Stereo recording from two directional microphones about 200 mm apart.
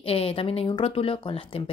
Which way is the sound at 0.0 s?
30° left (ahead or behind).